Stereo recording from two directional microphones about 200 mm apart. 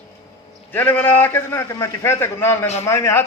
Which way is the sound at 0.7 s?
10° left (ahead or behind).